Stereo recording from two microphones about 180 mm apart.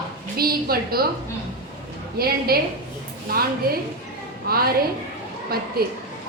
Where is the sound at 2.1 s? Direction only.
55° right (ahead or behind).